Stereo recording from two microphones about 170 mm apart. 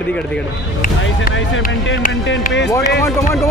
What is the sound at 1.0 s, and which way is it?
Speech, 90° left.